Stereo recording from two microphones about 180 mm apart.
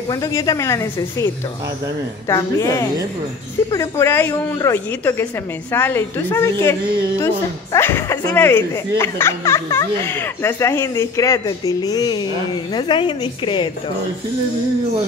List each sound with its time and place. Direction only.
0.1 s a woman's voice: 20° left (ahead or behind)